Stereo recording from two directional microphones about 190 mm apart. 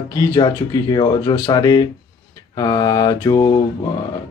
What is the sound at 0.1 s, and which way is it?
Speech, 20° left (ahead or behind).